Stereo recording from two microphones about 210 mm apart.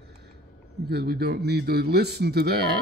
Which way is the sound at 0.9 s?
50° right (ahead or behind).